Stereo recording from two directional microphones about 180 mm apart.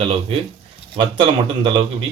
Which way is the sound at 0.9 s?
30° right (ahead or behind).